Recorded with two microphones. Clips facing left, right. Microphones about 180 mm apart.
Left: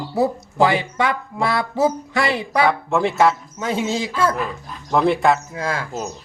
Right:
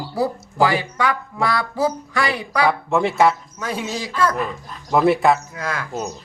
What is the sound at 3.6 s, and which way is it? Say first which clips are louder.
Speech: left 4 dB; 25° left (ahead or behind).